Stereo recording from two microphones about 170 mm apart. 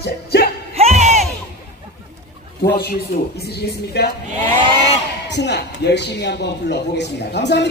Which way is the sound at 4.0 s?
70° left (ahead or behind).